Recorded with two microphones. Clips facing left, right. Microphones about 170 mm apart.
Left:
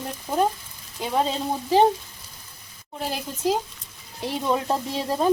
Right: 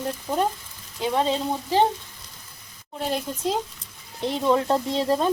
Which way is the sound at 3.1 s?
5° left (ahead or behind).